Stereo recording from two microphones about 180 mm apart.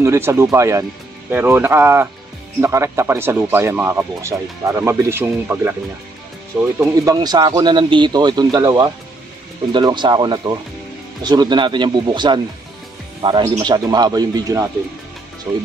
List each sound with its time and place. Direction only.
0.0 s speech: 15° right (ahead or behind)
6.8 s speech: 20° right (ahead or behind)